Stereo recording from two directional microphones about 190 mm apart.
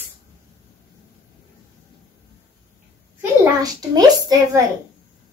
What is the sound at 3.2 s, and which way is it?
A child's voice, 20° right (ahead or behind).